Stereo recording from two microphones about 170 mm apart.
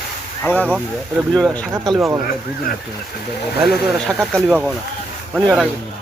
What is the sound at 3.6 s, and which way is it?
Speech, centre (ahead or behind).